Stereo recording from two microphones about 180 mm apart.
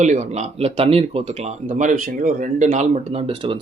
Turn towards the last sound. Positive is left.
turn(degrees=-30)  # may be behind; listen again after turning